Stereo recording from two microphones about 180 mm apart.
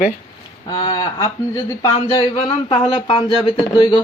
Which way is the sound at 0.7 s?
20° left (ahead or behind).